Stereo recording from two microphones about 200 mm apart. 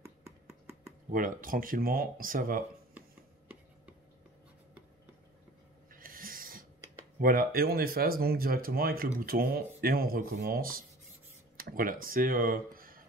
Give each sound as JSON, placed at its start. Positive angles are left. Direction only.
{"t": 1.1, "sound": "speech", "side_deg": -45}
{"t": 5.9, "sound": "a sound", "side_deg": -45}
{"t": 7.2, "sound": "speech", "side_deg": -45}